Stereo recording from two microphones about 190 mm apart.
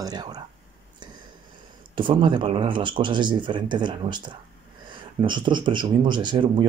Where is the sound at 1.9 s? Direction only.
25° right (ahead or behind).